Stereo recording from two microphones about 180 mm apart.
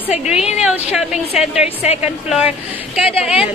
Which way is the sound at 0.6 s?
5° right (ahead or behind).